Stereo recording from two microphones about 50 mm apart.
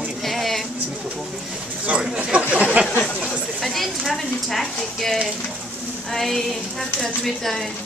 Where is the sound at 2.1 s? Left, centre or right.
Right.